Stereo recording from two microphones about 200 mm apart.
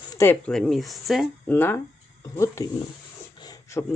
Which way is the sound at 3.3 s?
20° left (ahead or behind).